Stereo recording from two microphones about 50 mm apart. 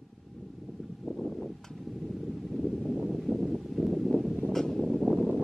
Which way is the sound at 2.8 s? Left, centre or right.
Centre.